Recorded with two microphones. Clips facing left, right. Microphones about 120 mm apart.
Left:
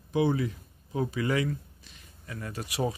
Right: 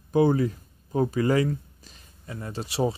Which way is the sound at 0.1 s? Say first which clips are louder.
Right 5 dB; 45° right (ahead or behind).